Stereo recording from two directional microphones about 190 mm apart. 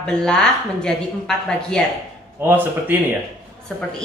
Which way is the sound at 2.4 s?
10° right (ahead or behind).